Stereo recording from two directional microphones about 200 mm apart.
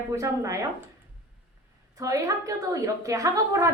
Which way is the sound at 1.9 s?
15° right (ahead or behind).